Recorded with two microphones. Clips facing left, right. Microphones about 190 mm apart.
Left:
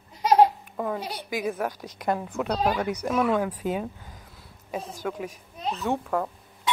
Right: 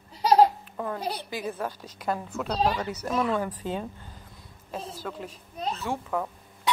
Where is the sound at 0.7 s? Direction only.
5° left (ahead or behind).